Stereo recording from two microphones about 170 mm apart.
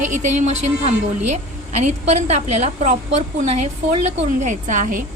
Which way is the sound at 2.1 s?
40° right (ahead or behind).